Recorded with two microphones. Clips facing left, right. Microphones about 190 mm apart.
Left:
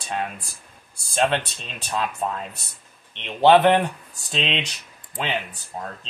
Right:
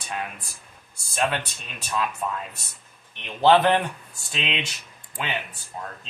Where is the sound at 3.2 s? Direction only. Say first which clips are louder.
Left 3 dB; 20° left (ahead or behind).